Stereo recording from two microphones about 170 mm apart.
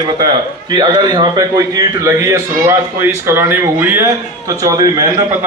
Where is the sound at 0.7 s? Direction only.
25° right (ahead or behind).